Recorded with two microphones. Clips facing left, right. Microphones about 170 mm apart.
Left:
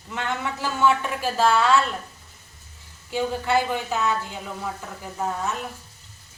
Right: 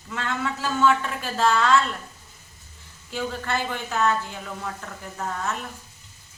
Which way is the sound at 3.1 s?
15° left (ahead or behind).